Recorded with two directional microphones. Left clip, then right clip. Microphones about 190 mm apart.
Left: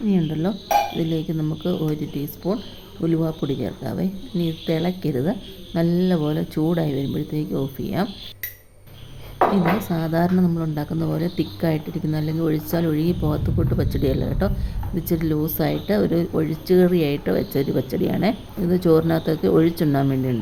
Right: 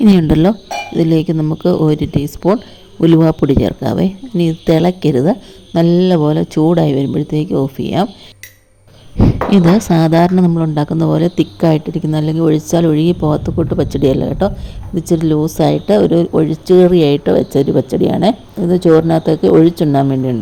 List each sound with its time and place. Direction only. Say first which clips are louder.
0.1 s speech: right 12 dB; 50° right (ahead or behind); by 8.1 s 35° right (ahead or behind)
9.7 s a woman's voice: right 12 dB; 40° right (ahead or behind); by 20.3 s 25° right (ahead or behind)